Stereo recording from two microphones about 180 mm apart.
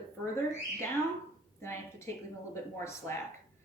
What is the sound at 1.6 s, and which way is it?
A woman's voice, 15° left (ahead or behind).